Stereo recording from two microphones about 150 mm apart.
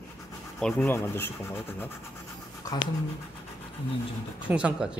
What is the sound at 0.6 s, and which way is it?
Speech, centre (ahead or behind).